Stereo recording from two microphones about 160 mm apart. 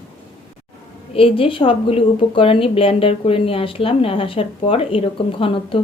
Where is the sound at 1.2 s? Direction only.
35° left (ahead or behind).